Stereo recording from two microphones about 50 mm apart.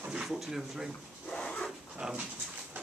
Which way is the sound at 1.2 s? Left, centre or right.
Centre.